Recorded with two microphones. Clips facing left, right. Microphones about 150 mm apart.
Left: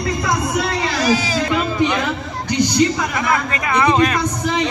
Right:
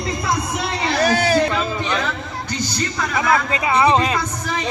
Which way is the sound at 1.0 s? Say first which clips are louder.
Right 3 dB; 60° right (ahead or behind).